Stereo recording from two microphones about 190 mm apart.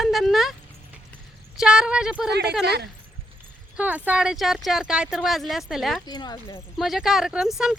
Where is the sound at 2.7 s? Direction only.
60° right (ahead or behind).